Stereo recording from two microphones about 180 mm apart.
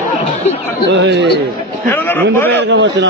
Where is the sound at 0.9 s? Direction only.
70° right (ahead or behind).